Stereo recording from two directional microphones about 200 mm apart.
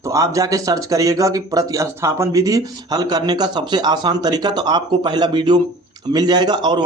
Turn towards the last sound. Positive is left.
turn(degrees=-20)  # may be behind; listen again after turning